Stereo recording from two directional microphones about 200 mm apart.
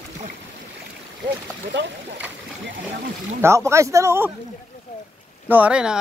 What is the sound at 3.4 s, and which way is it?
Speech, 15° right (ahead or behind).